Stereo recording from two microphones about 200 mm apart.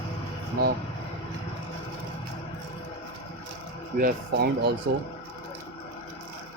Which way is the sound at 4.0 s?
50° right (ahead or behind).